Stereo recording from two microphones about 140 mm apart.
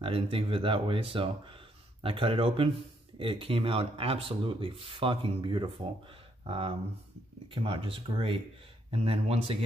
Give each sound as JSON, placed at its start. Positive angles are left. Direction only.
{"t": 0.0, "sound": "speech", "side_deg": -40}